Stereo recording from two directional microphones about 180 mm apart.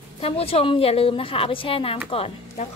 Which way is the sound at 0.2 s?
35° left (ahead or behind).